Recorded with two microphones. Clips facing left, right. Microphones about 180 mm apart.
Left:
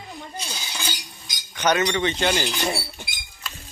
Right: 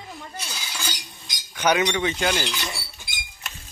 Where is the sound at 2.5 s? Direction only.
45° left (ahead or behind).